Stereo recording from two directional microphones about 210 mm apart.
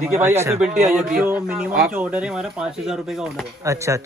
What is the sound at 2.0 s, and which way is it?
Speech, 5° right (ahead or behind).